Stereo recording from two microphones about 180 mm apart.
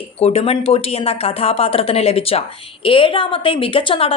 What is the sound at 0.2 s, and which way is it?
A woman's voice, 35° left (ahead or behind).